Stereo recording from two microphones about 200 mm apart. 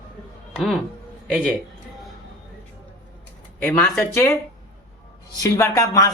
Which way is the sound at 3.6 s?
5° left (ahead or behind).